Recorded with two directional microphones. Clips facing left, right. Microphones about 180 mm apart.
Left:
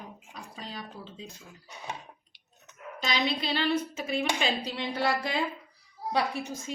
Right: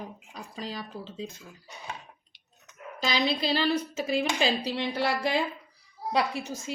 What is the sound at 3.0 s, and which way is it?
A woman's voice, 35° right (ahead or behind).